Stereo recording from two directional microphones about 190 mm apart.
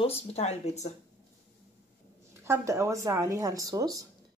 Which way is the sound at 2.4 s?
15° right (ahead or behind).